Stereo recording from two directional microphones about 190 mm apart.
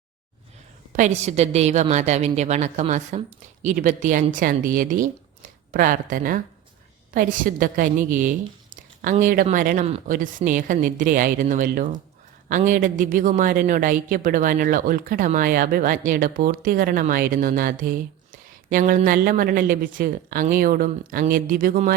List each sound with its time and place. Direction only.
0.9 s a woman's voice: 40° right (ahead or behind)